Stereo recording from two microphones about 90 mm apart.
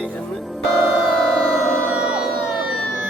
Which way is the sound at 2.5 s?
10° right (ahead or behind).